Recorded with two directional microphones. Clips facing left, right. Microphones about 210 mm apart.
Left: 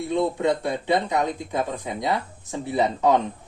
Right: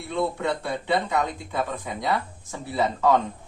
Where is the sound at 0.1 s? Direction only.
20° left (ahead or behind).